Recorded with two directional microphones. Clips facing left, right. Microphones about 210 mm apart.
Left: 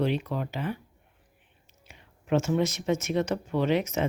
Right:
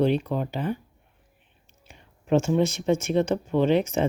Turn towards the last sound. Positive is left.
turn(degrees=-30)  # may be behind; listen again after turning